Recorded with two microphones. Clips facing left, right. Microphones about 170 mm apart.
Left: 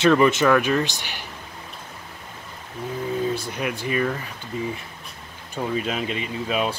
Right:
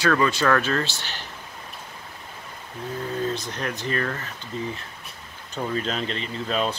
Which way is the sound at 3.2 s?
10° left (ahead or behind).